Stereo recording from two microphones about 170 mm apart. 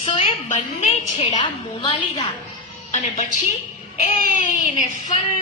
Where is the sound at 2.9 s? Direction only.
45° left (ahead or behind).